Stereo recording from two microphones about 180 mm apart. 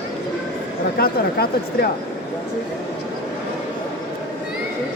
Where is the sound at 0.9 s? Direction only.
60° left (ahead or behind).